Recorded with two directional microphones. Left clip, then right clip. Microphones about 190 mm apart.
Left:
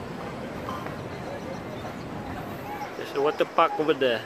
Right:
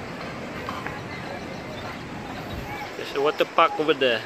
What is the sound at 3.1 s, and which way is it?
Speech, 5° right (ahead or behind).